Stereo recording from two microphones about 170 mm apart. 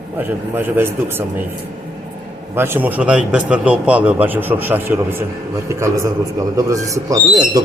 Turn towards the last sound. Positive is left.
turn(degrees=-20)  # may be behind; listen again after turning